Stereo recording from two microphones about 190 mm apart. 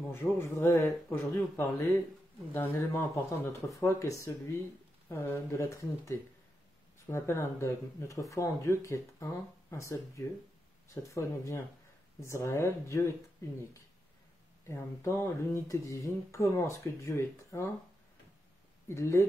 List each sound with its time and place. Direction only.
0.1 s speech: 10° left (ahead or behind)
2.5 s speech: 10° left (ahead or behind)
14.7 s speech: 15° left (ahead or behind)
18.9 s speech: 15° left (ahead or behind)